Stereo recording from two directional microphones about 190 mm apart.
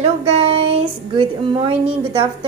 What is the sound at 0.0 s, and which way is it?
Child singing, 35° right (ahead or behind).